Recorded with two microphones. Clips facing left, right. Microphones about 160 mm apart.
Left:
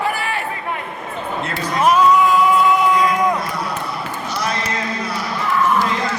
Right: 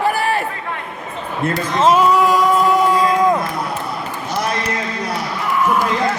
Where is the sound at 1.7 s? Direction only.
25° right (ahead or behind).